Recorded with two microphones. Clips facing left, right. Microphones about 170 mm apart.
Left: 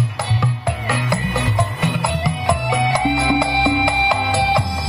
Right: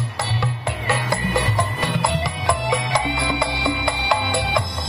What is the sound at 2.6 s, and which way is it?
Music, 55° left (ahead or behind).